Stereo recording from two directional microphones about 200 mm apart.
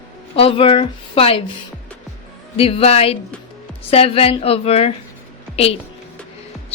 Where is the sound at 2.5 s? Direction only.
30° left (ahead or behind).